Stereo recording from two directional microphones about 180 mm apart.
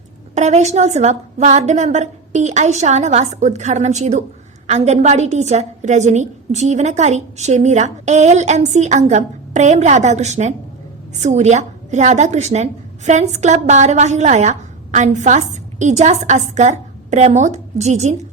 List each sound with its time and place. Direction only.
0.3 s a woman's voice: 40° right (ahead or behind)